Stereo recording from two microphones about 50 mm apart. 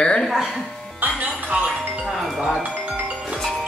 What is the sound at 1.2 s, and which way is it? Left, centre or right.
Music, right.